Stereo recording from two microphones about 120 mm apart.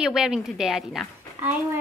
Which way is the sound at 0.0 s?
5° right (ahead or behind).